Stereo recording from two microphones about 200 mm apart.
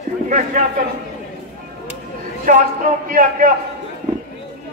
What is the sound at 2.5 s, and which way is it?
A man's voice, 40° right (ahead or behind).